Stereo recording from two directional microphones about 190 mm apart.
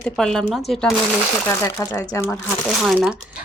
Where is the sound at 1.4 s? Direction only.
15° left (ahead or behind).